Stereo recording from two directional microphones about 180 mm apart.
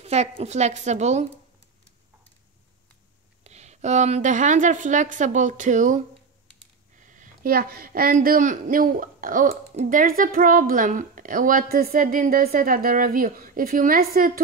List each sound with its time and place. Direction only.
0.0 s a sound: 35° right (ahead or behind)
0.4 s a woman's voice: 40° right (ahead or behind)
3.4 s a woman's voice: 40° right (ahead or behind)
7.0 s a woman's voice: 45° right (ahead or behind)